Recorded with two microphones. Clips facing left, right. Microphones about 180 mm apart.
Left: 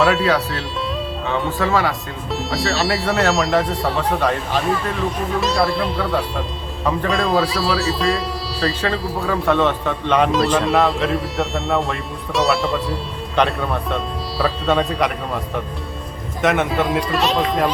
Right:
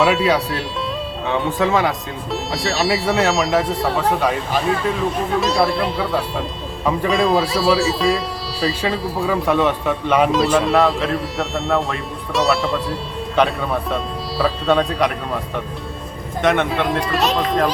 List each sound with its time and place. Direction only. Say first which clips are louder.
0.0 s speech: even; centre (ahead or behind)
1.3 s speech: right 2 dB; 20° right (ahead or behind)
2.3 s speech: left 1 dB; centre (ahead or behind)